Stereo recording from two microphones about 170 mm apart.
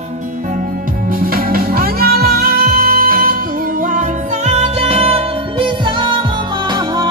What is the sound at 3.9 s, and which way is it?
Music, 40° right (ahead or behind).